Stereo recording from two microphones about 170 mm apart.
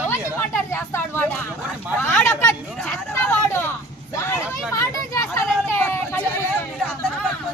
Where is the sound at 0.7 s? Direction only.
15° left (ahead or behind).